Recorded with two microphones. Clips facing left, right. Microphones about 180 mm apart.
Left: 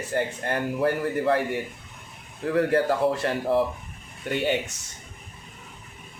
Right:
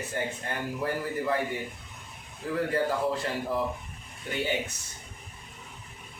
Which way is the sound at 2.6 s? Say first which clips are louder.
Left 6 dB; 70° left (ahead or behind).